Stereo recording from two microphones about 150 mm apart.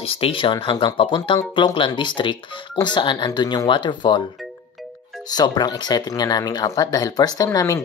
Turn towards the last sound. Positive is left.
turn(degrees=20)  # may be behind; listen again after turning